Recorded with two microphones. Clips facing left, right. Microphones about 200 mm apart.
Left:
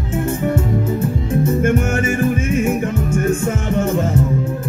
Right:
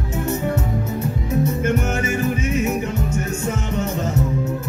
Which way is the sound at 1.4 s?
50° left (ahead or behind).